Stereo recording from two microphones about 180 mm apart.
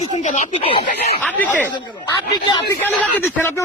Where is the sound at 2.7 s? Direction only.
10° left (ahead or behind).